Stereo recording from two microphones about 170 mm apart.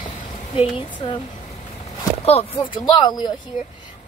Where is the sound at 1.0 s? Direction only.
30° left (ahead or behind).